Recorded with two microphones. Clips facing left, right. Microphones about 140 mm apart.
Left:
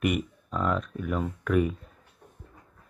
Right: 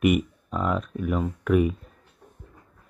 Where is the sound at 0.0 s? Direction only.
10° right (ahead or behind).